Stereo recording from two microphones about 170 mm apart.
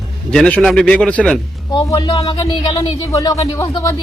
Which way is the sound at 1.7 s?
25° left (ahead or behind).